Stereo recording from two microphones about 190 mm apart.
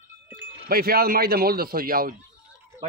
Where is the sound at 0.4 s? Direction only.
55° right (ahead or behind).